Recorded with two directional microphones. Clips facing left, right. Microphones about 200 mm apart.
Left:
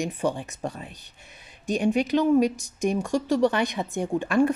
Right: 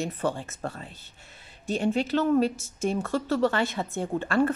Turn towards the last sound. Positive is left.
turn(degrees=15)  # may be behind; listen again after turning